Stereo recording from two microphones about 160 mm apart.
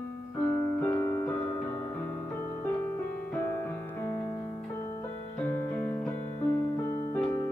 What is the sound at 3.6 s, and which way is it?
Music, 15° left (ahead or behind).